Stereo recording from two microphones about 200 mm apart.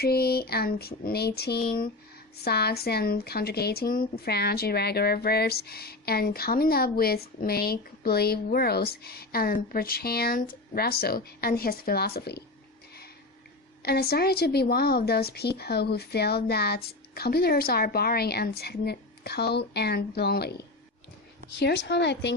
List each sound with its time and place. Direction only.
0.0 s speech: 50° left (ahead or behind)
13.8 s speech: 50° left (ahead or behind)